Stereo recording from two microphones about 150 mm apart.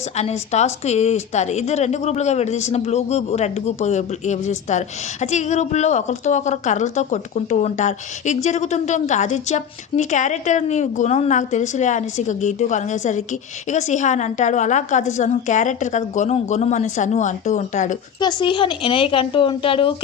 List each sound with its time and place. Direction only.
0.2 s a woman's voice: 45° left (ahead or behind)
18.2 s a woman's voice: 30° left (ahead or behind)